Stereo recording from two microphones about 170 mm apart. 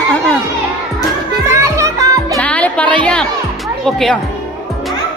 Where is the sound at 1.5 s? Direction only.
15° right (ahead or behind).